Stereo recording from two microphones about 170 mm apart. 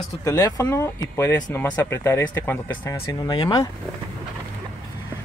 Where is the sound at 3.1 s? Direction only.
25° left (ahead or behind).